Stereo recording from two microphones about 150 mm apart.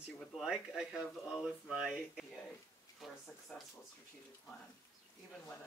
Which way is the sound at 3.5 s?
5° left (ahead or behind).